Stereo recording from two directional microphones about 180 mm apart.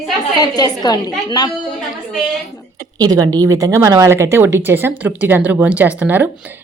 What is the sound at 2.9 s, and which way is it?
Speech, 20° right (ahead or behind).